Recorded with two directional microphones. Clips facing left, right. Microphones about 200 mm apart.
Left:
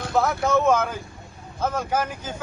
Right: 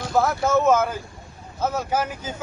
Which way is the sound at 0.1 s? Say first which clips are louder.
Right 1 dB; centre (ahead or behind).